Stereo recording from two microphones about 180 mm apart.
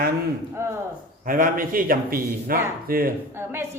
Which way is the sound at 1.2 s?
50° right (ahead or behind).